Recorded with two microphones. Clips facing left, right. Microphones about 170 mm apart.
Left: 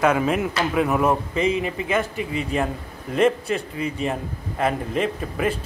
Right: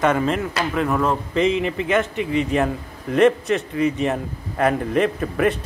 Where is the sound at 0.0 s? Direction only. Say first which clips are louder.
Even; 5° left (ahead or behind).